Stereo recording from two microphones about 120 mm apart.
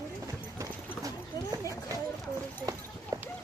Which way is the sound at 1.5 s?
30° right (ahead or behind).